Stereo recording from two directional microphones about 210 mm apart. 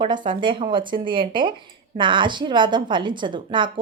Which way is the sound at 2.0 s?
20° right (ahead or behind).